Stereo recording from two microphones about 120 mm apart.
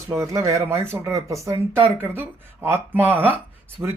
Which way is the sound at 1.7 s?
15° right (ahead or behind).